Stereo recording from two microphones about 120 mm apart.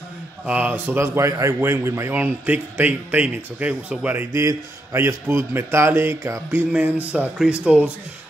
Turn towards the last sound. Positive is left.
turn(degrees=-10)  # may be behind; listen again after turning